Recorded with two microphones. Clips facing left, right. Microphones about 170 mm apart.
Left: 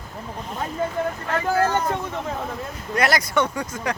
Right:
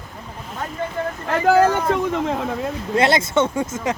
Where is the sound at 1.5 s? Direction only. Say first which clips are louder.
Right 6 dB; 90° right.